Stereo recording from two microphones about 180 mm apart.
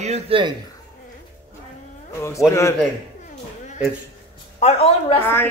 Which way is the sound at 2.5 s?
15° left (ahead or behind).